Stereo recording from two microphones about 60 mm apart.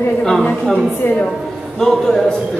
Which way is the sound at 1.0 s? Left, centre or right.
Left.